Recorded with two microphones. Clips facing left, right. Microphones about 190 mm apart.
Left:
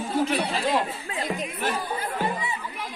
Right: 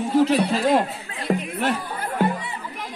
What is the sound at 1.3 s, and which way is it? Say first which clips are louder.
Chatter: right 8 dB; 60° right (ahead or behind).